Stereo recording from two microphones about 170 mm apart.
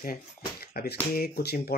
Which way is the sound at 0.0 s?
60° left (ahead or behind).